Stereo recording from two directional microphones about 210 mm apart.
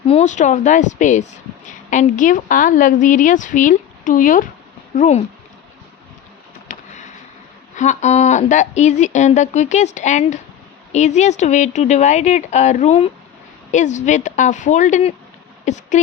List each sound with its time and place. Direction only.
0.0 s a woman's voice: 30° left (ahead or behind)
6.7 s a sound: 40° left (ahead or behind)
7.8 s a woman's voice: 35° left (ahead or behind)